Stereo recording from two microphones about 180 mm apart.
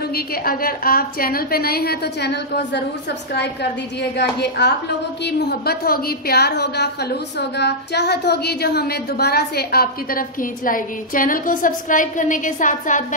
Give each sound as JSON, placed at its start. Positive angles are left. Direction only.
{"t": 0.1, "sound": "a woman's voice", "side_deg": 55}
{"t": 4.2, "sound": "a woman's voice", "side_deg": 70}